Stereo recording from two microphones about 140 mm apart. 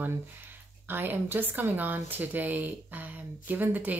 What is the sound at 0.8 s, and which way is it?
Speech, 15° right (ahead or behind).